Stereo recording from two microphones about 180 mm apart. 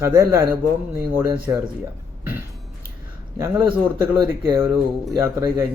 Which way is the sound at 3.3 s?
20° right (ahead or behind).